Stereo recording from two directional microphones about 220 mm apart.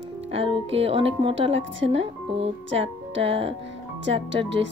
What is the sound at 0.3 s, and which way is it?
Speech, 25° right (ahead or behind).